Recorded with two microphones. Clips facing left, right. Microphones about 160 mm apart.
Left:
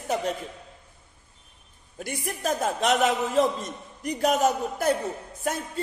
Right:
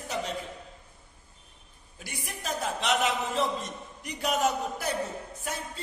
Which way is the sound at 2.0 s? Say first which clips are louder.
Left 9 dB; 50° left (ahead or behind).